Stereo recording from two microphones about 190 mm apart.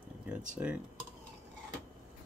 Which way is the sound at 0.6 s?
10° right (ahead or behind).